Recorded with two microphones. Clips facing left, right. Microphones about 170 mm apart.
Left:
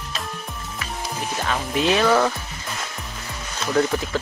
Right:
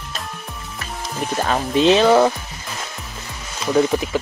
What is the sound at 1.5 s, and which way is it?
Speech, 25° right (ahead or behind).